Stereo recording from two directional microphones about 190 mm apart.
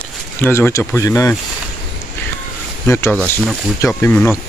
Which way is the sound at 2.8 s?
15° left (ahead or behind).